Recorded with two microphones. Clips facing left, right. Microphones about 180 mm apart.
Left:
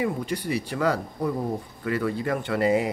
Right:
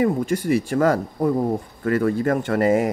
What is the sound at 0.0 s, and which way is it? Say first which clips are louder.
Speech: right 7 dB; 45° right (ahead or behind).